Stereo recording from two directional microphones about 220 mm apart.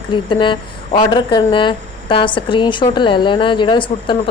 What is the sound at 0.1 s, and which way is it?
A woman's voice, 20° left (ahead or behind).